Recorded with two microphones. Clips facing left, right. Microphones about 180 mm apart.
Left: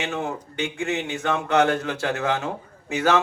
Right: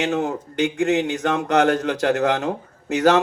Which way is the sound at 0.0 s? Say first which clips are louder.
Right 6 dB; 40° right (ahead or behind).